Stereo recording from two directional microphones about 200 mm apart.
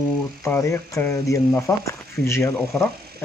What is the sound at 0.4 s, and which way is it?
A man's voice, 15° left (ahead or behind).